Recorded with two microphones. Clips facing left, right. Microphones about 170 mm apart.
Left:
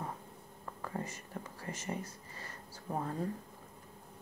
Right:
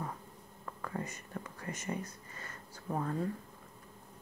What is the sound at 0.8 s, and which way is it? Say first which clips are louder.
Whispering: right 1 dB; 25° left (ahead or behind).